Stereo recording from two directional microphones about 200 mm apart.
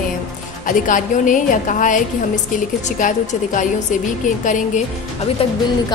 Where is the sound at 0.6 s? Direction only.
40° left (ahead or behind).